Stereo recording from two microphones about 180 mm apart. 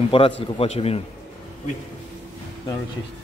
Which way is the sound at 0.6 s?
35° left (ahead or behind).